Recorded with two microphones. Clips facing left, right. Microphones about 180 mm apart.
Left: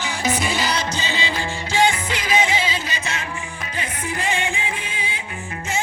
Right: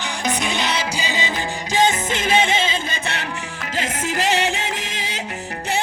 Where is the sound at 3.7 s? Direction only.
90° right.